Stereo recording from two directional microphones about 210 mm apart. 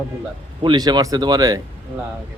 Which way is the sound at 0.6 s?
20° right (ahead or behind).